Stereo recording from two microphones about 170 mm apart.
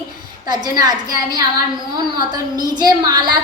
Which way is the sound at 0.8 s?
25° right (ahead or behind).